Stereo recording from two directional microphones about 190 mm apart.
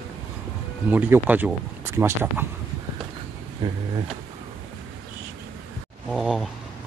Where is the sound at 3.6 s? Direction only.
20° right (ahead or behind).